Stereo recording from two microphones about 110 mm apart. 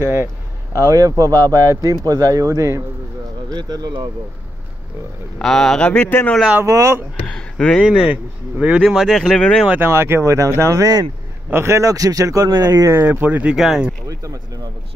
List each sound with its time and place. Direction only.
0.0 s speech: 20° right (ahead or behind)
5.4 s speech: 5° left (ahead or behind)
6.6 s speech: 25° right (ahead or behind)
7.2 s speech: 5° left (ahead or behind)
7.8 s speech: 10° right (ahead or behind); by 9.6 s 10° left (ahead or behind)
9.8 s speech: 20° right (ahead or behind)
12.9 s speech: 15° right (ahead or behind)
14.0 s speech: 30° right (ahead or behind)